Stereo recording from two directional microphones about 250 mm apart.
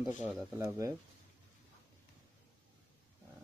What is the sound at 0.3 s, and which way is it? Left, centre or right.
Speech, centre.